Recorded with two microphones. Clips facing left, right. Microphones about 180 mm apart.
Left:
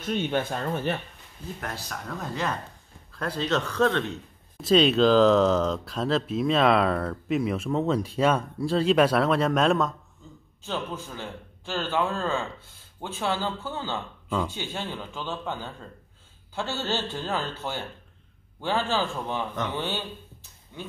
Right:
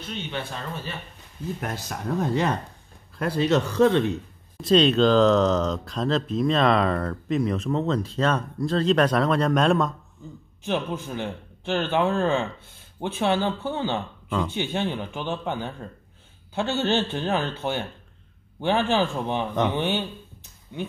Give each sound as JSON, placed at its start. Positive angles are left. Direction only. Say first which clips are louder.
{"t": 0.0, "sound": "speech", "louder": "left 6 dB", "side_deg": 45}
{"t": 1.6, "sound": "speech", "louder": "right 4 dB", "side_deg": -20}
{"t": 3.2, "sound": "speech", "louder": "right 5 dB", "side_deg": -10}
{"t": 4.6, "sound": "speech", "louder": "right 1 dB", "side_deg": 5}
{"t": 10.6, "sound": "speech", "louder": "right 5 dB", "side_deg": -15}